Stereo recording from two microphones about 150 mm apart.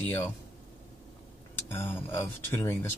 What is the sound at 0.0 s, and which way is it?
Speech, 10° left (ahead or behind).